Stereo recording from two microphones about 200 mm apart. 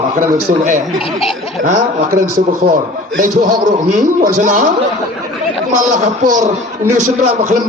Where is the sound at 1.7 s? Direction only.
40° right (ahead or behind).